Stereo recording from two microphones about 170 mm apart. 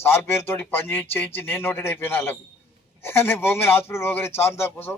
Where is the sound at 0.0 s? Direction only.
15° left (ahead or behind).